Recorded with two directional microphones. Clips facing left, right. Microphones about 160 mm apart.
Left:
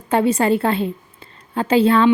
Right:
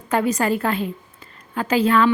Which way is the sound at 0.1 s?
30° left (ahead or behind).